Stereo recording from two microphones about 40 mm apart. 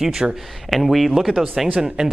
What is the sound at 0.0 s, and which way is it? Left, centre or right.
Speech, centre.